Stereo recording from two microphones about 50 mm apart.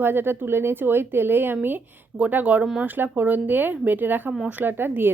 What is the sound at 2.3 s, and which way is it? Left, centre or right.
A woman's voice, right.